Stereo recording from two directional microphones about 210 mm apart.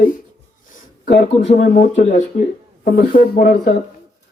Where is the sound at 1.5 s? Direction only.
35° left (ahead or behind).